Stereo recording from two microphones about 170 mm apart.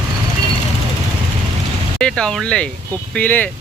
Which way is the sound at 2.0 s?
5° left (ahead or behind).